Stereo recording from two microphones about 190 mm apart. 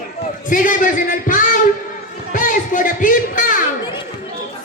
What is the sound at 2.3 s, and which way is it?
Music, 45° left (ahead or behind).